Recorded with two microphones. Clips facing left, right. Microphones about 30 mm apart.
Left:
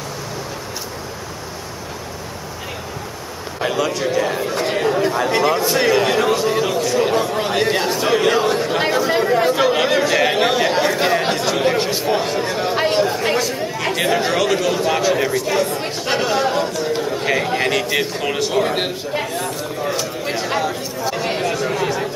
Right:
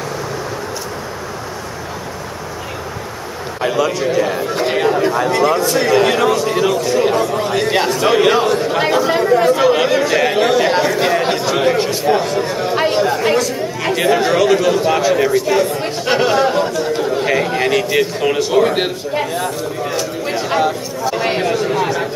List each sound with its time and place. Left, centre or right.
3.6 s a man's voice: centre
4.5 s speech: centre
5.3 s speech: centre
5.9 s a man's voice: centre
7.2 s speech: centre
8.0 s speech: centre
8.5 s a man's voice: centre
12.7 s chatter: centre
13.0 s a man's voice: centre
13.4 s a man's voice: centre
21.2 s speech: right
21.5 s speech: centre